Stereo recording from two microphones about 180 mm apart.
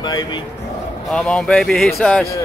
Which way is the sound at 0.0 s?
25° left (ahead or behind).